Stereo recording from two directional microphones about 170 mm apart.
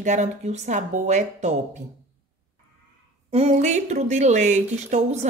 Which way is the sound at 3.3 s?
40° right (ahead or behind).